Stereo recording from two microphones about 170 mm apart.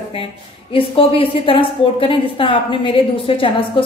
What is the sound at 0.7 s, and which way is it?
A woman's voice, 35° left (ahead or behind).